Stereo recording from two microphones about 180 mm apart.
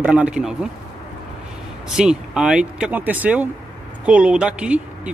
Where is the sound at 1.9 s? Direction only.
5° right (ahead or behind).